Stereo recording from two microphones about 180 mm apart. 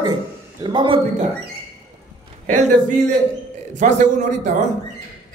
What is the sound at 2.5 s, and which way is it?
A man's voice, 45° right (ahead or behind).